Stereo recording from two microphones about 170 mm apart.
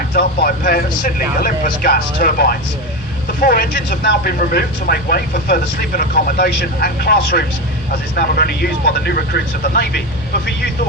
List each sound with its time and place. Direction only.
0.1 s speech: 65° left (ahead or behind)